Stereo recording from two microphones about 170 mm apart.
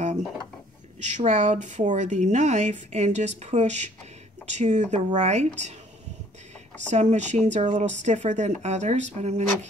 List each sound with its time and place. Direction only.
1.0 s a woman's voice: 45° right (ahead or behind)
6.9 s a woman's voice: 45° right (ahead or behind)